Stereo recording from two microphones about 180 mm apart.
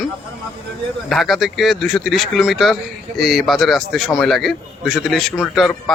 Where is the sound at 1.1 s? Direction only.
Centre (ahead or behind).